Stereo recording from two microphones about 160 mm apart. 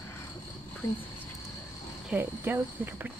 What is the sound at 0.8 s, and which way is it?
Speech, 20° left (ahead or behind).